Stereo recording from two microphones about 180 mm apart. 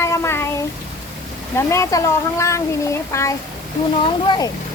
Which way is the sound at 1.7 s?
15° left (ahead or behind).